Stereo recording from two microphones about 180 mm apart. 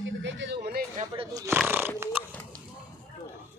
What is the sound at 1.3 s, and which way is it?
Speech, 15° right (ahead or behind).